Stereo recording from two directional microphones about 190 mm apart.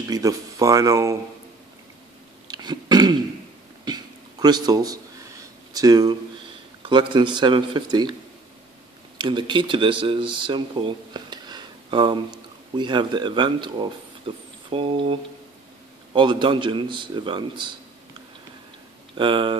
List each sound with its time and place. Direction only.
0.1 s speech: 15° right (ahead or behind)
2.4 s throat clearing: 20° right (ahead or behind)
3.8 s a sound: 20° right (ahead or behind)
6.8 s a man's voice: 25° right (ahead or behind)
9.2 s a man's voice: 25° right (ahead or behind)
19.1 s a man's voice: 25° right (ahead or behind)